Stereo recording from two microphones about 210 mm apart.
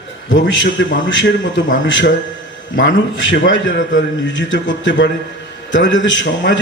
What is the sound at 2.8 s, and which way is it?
A man's voice, 65° left (ahead or behind).